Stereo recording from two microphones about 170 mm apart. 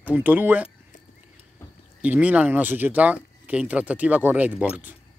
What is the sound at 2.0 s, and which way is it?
Speech, 10° right (ahead or behind).